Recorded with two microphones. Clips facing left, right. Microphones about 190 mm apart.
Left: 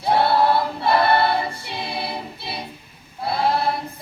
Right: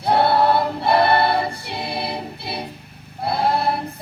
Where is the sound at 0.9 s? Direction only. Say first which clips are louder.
Right 1 dB; 60° right (ahead or behind).